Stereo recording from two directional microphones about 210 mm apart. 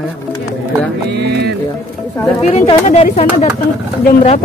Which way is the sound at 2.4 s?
35° left (ahead or behind).